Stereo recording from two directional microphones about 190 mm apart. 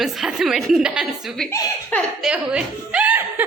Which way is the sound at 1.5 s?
15° left (ahead or behind).